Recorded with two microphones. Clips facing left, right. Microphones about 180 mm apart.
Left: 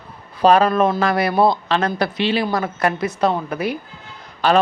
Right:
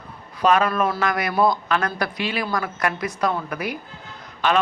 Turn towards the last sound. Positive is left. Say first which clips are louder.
# left 4 dB
turn(degrees=35)  # may be behind; listen again after turning